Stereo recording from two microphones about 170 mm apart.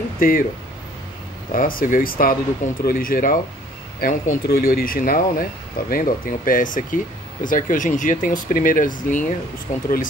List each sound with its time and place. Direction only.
0.2 s speech: 55° left (ahead or behind)
1.5 s speech: 55° left (ahead or behind)